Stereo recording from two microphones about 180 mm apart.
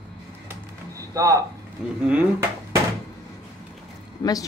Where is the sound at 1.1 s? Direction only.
20° right (ahead or behind).